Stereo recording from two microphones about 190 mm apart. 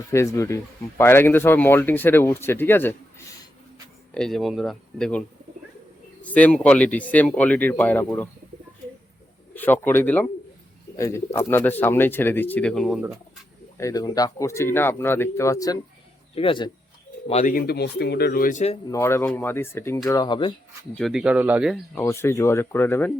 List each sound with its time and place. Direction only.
0.1 s speech: 15° left (ahead or behind)
6.2 s speech: 5° left (ahead or behind)
9.6 s speech: 10° left (ahead or behind)
13.7 s speech: 20° left (ahead or behind)
16.3 s speech: 30° left (ahead or behind)
17.2 s speech: 40° left (ahead or behind)
18.9 s speech: 15° left (ahead or behind)
20.9 s speech: centre (ahead or behind)
21.9 s speech: 10° left (ahead or behind)